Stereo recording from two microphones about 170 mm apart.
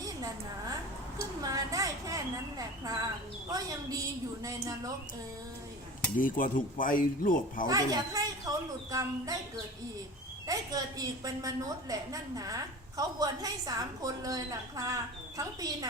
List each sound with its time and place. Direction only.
1.4 s a sound: 20° right (ahead or behind)
3.5 s a woman's voice: 20° right (ahead or behind)
6.1 s speech: 50° left (ahead or behind)
7.7 s a woman's voice: 20° right (ahead or behind)
10.4 s a woman's voice: 20° right (ahead or behind)